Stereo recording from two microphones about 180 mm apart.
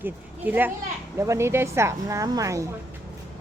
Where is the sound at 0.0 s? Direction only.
10° right (ahead or behind).